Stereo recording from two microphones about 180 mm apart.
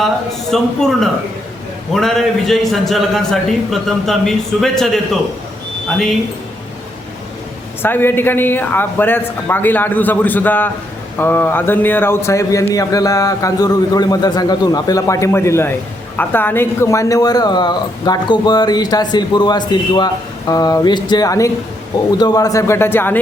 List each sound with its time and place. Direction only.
0.5 s a man's voice: centre (ahead or behind)
7.8 s a man's voice: 10° left (ahead or behind)